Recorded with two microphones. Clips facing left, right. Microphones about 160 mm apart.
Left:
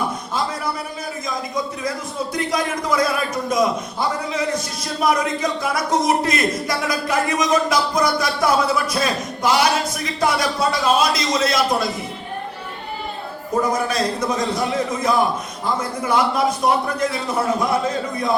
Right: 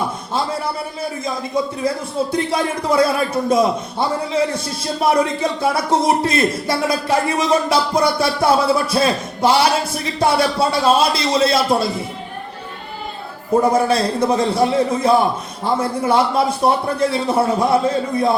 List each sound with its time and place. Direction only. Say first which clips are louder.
1.2 s speech: right 4 dB; 30° right (ahead or behind)
13.6 s speech: right 5 dB; 30° right (ahead or behind)